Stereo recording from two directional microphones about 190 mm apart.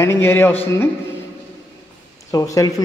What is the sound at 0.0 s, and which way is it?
Speech, 15° left (ahead or behind).